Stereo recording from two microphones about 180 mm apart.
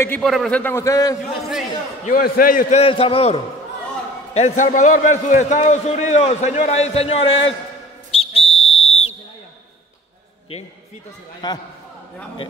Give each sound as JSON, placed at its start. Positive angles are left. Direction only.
{"t": 0.2, "sound": "a man's voice", "side_deg": 0}
{"t": 2.0, "sound": "a man's voice", "side_deg": 50}
{"t": 2.8, "sound": "a man's voice", "side_deg": 30}
{"t": 8.1, "sound": "whistle", "side_deg": 35}
{"t": 11.4, "sound": "speech", "side_deg": 25}